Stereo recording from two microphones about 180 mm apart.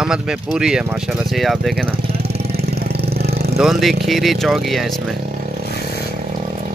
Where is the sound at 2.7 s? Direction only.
65° right (ahead or behind).